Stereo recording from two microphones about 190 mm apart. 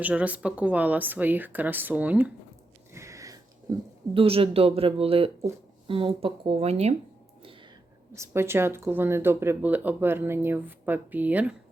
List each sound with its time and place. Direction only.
0.0 s speech: 5° right (ahead or behind)
2.9 s a sound: 15° right (ahead or behind)
3.7 s speech: 20° right (ahead or behind)
8.1 s speech: 15° right (ahead or behind)